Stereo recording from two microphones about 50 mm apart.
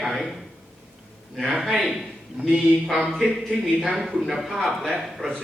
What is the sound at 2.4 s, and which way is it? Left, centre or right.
Speech, right.